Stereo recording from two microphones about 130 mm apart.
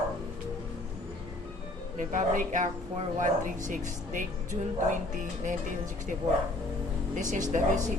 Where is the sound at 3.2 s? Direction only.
80° right.